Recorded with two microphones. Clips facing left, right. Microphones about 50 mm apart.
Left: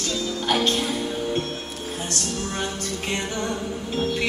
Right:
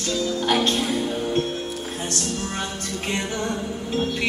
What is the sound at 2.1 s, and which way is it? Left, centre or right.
Music, right.